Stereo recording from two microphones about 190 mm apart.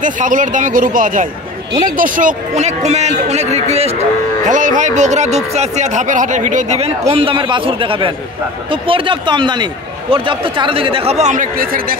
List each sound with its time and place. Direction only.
0.0 s speech: 45° right (ahead or behind)